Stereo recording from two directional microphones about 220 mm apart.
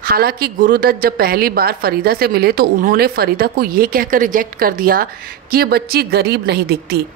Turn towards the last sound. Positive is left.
turn(degrees=-45)  # may be behind; listen again after turning